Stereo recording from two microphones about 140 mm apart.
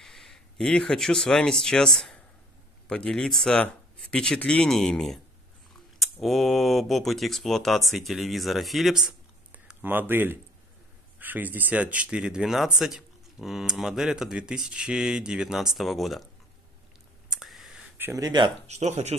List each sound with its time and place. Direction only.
0.0 s speech: 5° left (ahead or behind)
6.2 s speech: centre (ahead or behind)
17.3 s clicking: centre (ahead or behind)
17.9 s a sound: 15° right (ahead or behind)
18.2 s speech: 30° right (ahead or behind)
18.7 s speech: 55° right (ahead or behind)